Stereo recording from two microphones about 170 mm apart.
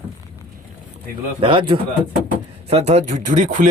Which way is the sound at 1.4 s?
30° right (ahead or behind).